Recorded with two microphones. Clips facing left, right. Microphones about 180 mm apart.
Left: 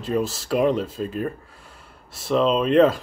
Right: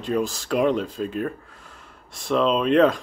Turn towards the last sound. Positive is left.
turn(degrees=5)  # may be behind; listen again after turning